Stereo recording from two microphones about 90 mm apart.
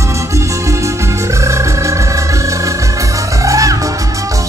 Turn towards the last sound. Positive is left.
turn(degrees=-35)  # may be behind; listen again after turning